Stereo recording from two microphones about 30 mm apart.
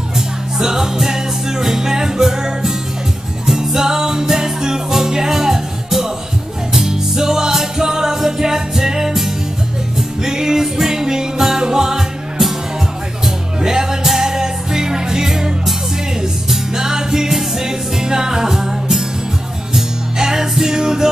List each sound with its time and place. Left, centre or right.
0.6 s music: centre
13.2 s music: right
20.2 s music: centre